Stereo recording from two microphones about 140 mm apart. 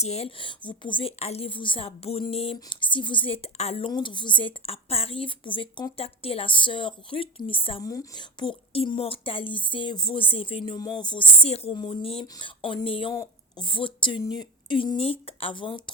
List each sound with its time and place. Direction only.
0.0 s speech: 50° left (ahead or behind)
7.8 s speech: 25° left (ahead or behind)
11.4 s a woman's voice: 45° left (ahead or behind)
12.2 s speech: 30° left (ahead or behind)